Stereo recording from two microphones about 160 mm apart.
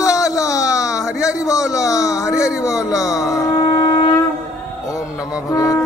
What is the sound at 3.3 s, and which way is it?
Music, 20° left (ahead or behind).